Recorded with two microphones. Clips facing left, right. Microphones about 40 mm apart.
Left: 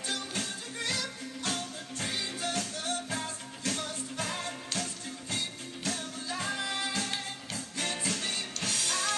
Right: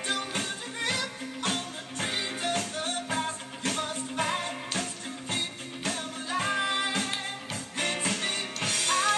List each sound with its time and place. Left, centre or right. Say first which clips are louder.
0.0 s music: right 4 dB; right
5.9 s music: right 3 dB; right